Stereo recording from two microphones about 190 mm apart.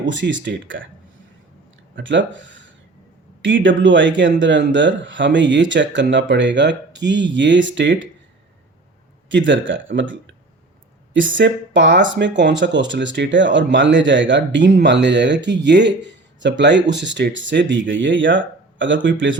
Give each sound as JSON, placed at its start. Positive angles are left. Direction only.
{"t": 0.1, "sound": "speech", "side_deg": -75}
{"t": 2.0, "sound": "speech", "side_deg": -75}
{"t": 9.3, "sound": "speech", "side_deg": -75}